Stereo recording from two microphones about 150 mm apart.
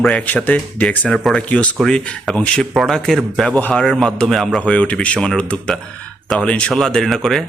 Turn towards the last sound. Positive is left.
turn(degrees=0)  # may be behind; listen again after turning